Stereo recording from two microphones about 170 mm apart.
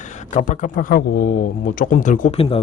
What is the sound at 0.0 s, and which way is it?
Speech, 50° left (ahead or behind).